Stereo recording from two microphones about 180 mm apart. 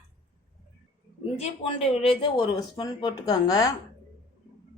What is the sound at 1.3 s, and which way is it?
Speech, 35° left (ahead or behind).